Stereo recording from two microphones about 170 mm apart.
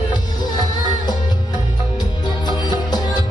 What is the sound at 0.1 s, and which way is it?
Music, 25° left (ahead or behind).